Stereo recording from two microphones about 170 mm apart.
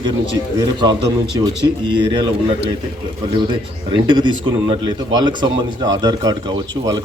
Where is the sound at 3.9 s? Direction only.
30° right (ahead or behind).